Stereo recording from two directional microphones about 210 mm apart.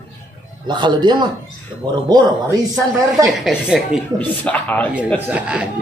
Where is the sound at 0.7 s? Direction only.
20° right (ahead or behind).